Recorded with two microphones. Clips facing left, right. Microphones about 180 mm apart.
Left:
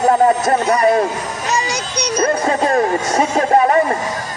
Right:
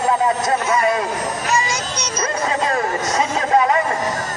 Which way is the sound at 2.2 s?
35° left (ahead or behind).